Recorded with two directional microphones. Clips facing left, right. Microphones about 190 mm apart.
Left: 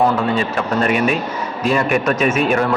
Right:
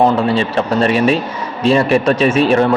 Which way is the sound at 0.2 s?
30° right (ahead or behind).